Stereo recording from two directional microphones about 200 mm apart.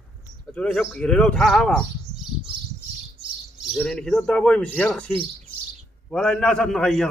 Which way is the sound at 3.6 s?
Centre (ahead or behind).